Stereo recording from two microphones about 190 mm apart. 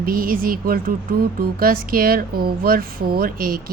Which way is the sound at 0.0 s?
50° right (ahead or behind).